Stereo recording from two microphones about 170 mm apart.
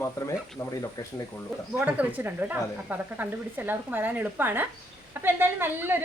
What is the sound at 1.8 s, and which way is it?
Speech, 10° right (ahead or behind).